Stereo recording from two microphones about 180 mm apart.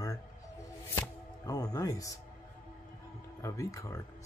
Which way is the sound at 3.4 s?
15° left (ahead or behind).